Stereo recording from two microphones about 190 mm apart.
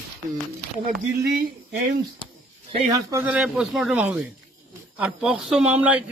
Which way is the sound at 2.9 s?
15° right (ahead or behind).